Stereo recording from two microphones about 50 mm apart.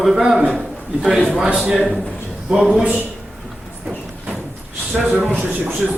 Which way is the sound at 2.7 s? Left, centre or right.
Right.